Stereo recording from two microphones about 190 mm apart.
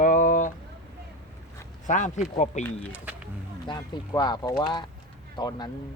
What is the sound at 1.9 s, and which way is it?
Speech, 40° left (ahead or behind).